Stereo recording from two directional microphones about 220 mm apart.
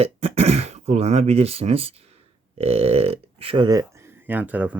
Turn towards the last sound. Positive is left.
turn(degrees=-5)  # may be behind; listen again after turning